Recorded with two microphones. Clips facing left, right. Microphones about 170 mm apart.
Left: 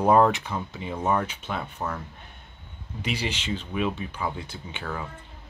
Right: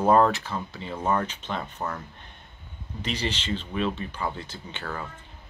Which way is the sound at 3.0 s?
10° left (ahead or behind).